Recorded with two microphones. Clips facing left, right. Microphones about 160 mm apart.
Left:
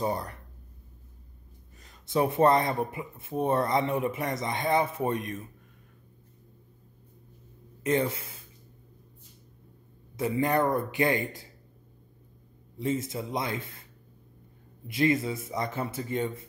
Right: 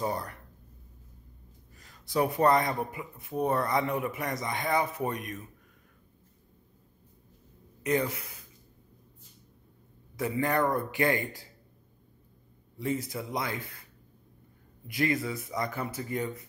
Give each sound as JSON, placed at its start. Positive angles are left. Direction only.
{"t": 0.0, "sound": "speech", "side_deg": 25}
{"t": 1.8, "sound": "speech", "side_deg": 20}
{"t": 7.8, "sound": "speech", "side_deg": 25}
{"t": 10.1, "sound": "speech", "side_deg": 20}
{"t": 12.7, "sound": "speech", "side_deg": 20}
{"t": 14.9, "sound": "speech", "side_deg": 25}